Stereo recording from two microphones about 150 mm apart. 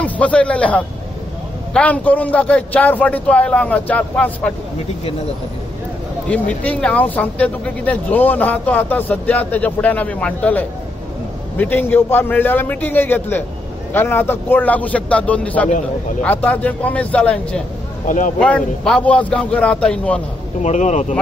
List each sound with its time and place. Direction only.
0.0 s a man's voice: 10° left (ahead or behind)
6.2 s speech: 10° left (ahead or behind)
18.0 s speech: 60° left (ahead or behind)
18.4 s speech: 5° left (ahead or behind)
20.6 s speech: 50° left (ahead or behind)